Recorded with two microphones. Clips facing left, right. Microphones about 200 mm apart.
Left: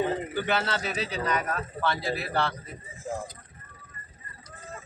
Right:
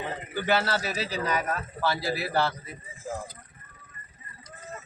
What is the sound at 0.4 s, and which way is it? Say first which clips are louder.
Speech: right 6 dB; 5° right (ahead or behind).